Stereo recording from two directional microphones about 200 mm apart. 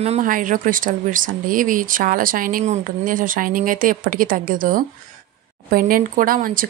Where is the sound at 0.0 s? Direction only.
35° right (ahead or behind).